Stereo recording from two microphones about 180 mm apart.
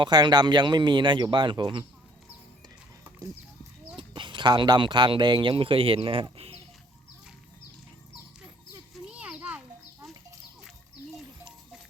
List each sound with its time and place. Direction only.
0.0 s speech: 25° right (ahead or behind)
3.9 s speech: 25° right (ahead or behind)
9.0 s children playing: 5° right (ahead or behind)